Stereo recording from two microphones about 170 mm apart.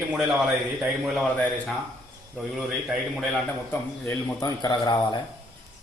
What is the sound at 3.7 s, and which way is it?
A man's voice, 15° left (ahead or behind).